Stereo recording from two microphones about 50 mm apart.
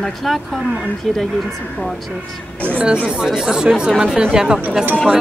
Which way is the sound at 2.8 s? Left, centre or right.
Centre.